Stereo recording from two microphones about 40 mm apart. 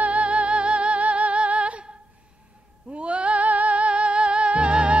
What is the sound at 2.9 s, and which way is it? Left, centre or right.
Music, right.